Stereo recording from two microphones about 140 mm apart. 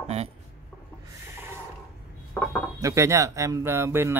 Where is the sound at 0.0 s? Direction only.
50° right (ahead or behind).